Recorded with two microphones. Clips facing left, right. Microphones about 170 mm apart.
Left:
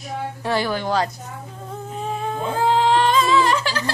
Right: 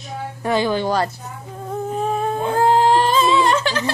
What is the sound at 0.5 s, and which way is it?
Speech, 20° right (ahead or behind).